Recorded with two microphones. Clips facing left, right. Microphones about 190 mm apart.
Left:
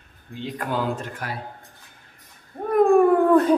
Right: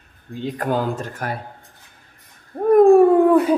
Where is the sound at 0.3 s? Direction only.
45° right (ahead or behind).